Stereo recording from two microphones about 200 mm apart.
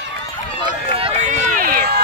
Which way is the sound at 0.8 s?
30° right (ahead or behind).